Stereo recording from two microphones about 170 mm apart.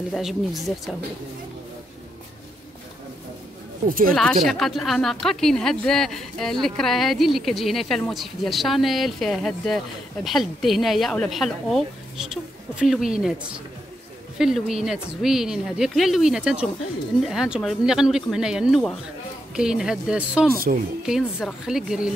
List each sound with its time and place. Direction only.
0.1 s a woman's voice: centre (ahead or behind)
4.1 s a woman's voice: centre (ahead or behind)
20.7 s speech: 55° right (ahead or behind)
21.0 s a woman's voice: 5° right (ahead or behind)